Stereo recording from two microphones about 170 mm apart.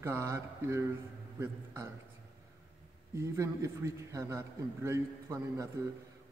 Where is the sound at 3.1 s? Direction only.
15° right (ahead or behind).